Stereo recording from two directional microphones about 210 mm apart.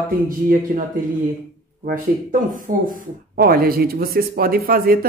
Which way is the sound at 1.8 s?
40° right (ahead or behind).